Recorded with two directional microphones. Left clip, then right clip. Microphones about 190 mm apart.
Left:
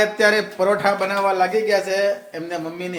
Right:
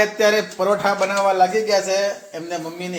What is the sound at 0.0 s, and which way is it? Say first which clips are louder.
Speech: even; 5° left (ahead or behind).